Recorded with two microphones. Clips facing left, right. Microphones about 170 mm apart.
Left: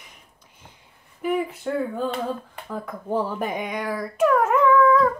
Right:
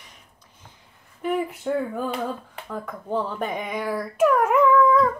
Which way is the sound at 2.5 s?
Centre (ahead or behind).